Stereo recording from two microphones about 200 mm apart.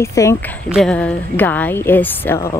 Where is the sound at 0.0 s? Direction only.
15° left (ahead or behind).